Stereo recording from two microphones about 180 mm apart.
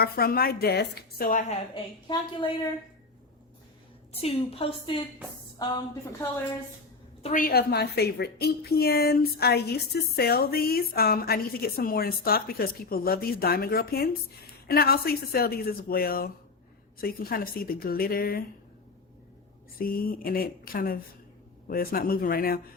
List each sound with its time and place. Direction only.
0.0 s a woman's voice: 55° left (ahead or behind)
1.7 s a woman's voice: 25° left (ahead or behind)
4.1 s a woman's voice: 35° left (ahead or behind)
7.2 s a woman's voice: 35° left (ahead or behind)
7.4 s a woman's voice: 60° left (ahead or behind)
19.8 s a woman's voice: 55° left (ahead or behind)